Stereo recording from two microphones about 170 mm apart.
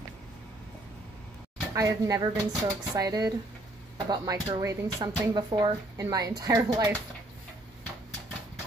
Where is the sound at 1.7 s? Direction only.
20° right (ahead or behind).